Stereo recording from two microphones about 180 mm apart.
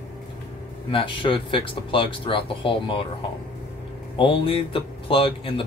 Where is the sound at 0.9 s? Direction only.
30° left (ahead or behind).